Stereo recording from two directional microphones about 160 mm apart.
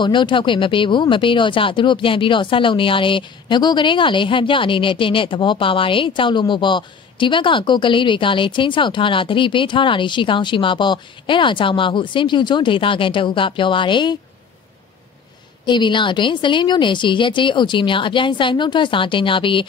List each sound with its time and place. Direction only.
0.0 s speech: 30° left (ahead or behind)
15.6 s speech: 30° left (ahead or behind)